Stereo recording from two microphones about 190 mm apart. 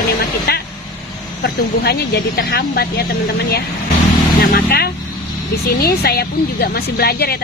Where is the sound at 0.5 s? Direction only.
55° left (ahead or behind).